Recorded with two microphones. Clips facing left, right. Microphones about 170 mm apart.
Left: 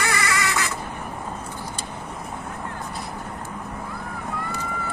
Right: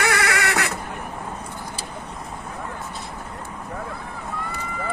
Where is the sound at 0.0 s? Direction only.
65° right (ahead or behind).